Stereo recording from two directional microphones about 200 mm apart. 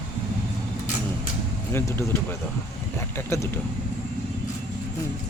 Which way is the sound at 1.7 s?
10° left (ahead or behind).